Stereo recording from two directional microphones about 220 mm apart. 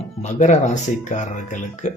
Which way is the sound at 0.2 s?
30° left (ahead or behind).